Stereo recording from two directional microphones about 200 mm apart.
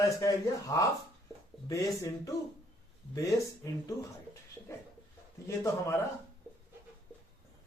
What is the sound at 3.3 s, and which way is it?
Speech, 15° left (ahead or behind).